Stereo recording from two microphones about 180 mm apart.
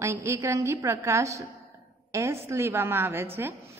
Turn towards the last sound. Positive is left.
turn(degrees=-15)  # may be behind; listen again after turning